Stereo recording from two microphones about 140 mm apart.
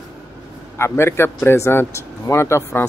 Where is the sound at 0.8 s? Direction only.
20° left (ahead or behind).